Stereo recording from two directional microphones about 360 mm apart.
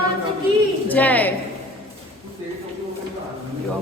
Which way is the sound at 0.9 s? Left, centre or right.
Centre.